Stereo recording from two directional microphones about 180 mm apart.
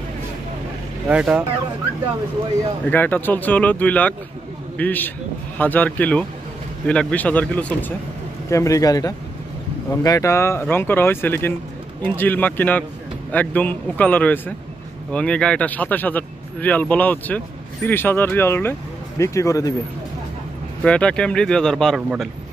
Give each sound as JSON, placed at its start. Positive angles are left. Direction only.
{"t": 1.0, "sound": "speech", "side_deg": -5}
{"t": 2.8, "sound": "speech", "side_deg": 10}
{"t": 20.8, "sound": "speech", "side_deg": 5}